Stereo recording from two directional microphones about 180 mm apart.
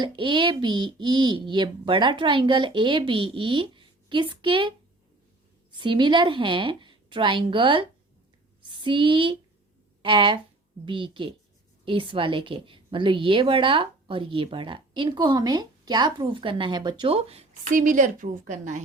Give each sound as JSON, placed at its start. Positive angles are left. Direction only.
{"t": 0.0, "sound": "a woman's voice", "side_deg": -25}
{"t": 5.7, "sound": "a woman's voice", "side_deg": -25}
{"t": 17.7, "sound": "a woman's voice", "side_deg": -45}